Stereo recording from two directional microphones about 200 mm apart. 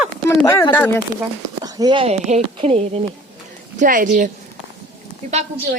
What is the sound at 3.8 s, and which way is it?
Speech, 40° right (ahead or behind).